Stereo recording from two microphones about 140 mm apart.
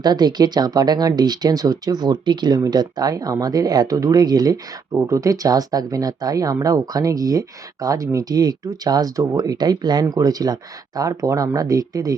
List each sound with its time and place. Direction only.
0.0 s speech: 30° right (ahead or behind)